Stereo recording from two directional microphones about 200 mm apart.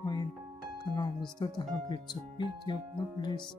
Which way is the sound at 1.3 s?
20° left (ahead or behind).